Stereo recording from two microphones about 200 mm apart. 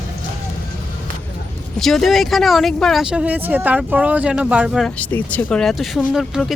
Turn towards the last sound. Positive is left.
turn(degrees=0)  # may be behind; listen again after turning